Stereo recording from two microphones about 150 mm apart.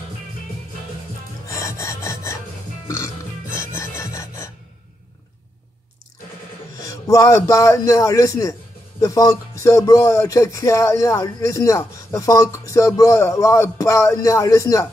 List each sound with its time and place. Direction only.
1.5 s filing: 20° left (ahead or behind)
2.9 s music: 20° left (ahead or behind)
6.8 s speech: 20° left (ahead or behind)